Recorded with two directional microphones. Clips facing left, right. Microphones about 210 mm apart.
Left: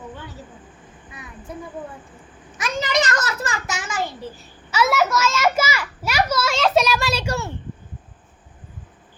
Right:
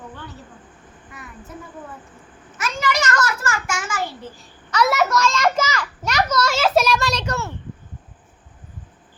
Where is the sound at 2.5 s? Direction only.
15° left (ahead or behind).